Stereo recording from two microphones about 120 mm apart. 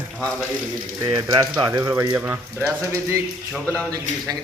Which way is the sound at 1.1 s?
35° right (ahead or behind).